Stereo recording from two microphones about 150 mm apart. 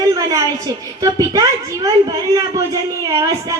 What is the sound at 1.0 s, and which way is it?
A woman's voice, 25° right (ahead or behind).